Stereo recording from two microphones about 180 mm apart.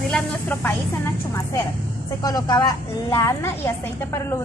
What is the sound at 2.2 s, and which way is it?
A woman's voice, 20° left (ahead or behind).